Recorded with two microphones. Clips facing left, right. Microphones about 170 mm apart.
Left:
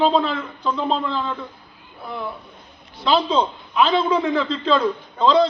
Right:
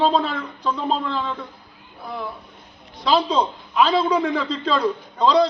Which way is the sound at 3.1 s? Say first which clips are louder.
Left 1 dB; 10° right (ahead or behind).